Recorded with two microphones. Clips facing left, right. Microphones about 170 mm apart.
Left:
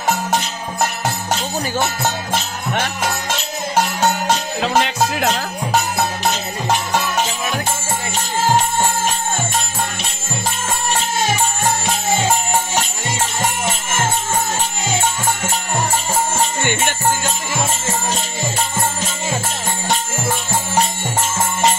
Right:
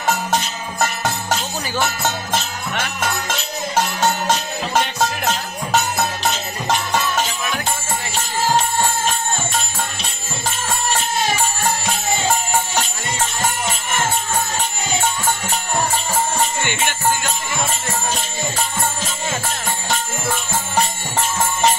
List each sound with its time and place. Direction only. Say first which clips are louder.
4.6 s music: left 3 dB; 90° left